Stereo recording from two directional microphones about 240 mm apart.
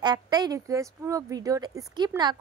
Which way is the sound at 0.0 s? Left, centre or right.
Centre.